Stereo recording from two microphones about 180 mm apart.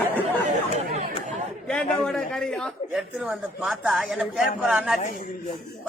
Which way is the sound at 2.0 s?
5° left (ahead or behind).